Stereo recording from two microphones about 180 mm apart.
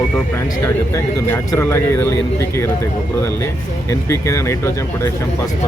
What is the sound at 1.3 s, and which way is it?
Speech, 15° left (ahead or behind).